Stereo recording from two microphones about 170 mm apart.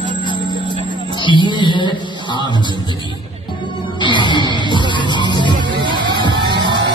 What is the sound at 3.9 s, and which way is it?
Music, 30° left (ahead or behind).